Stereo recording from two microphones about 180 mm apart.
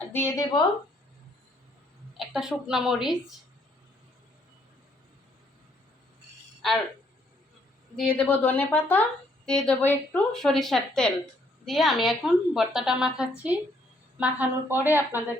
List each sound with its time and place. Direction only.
0.1 s a woman's voice: 15° left (ahead or behind)
2.1 s a woman's voice: centre (ahead or behind)
6.6 s a woman's voice: centre (ahead or behind)
7.9 s a woman's voice: 5° left (ahead or behind); by 15.4 s 10° right (ahead or behind)